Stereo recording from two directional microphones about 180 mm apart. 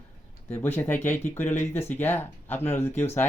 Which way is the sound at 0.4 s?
10° left (ahead or behind).